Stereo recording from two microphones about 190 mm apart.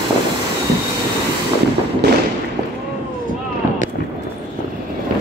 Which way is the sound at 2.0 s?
60° right (ahead or behind).